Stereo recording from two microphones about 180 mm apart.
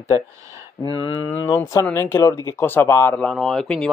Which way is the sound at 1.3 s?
15° left (ahead or behind).